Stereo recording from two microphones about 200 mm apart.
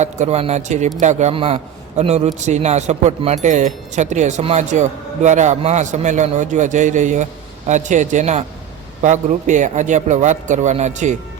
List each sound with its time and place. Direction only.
0.0 s a man's voice: 35° right (ahead or behind)